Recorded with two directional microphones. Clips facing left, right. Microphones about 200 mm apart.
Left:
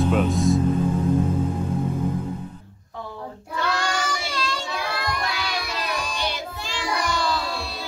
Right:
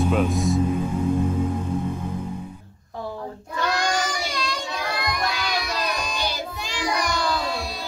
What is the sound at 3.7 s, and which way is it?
Child singing, 15° right (ahead or behind).